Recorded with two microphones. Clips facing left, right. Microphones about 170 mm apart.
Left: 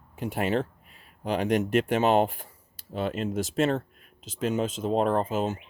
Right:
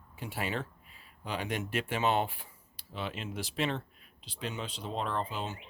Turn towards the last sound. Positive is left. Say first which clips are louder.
# left 10 dB
turn(degrees=45)  # may be behind; listen again after turning